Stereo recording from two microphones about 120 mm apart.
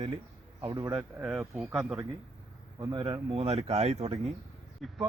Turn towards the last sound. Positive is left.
turn(degrees=0)  # may be behind; listen again after turning